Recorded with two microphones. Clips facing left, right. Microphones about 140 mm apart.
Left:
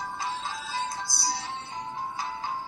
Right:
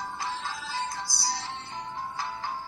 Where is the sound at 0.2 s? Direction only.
20° left (ahead or behind).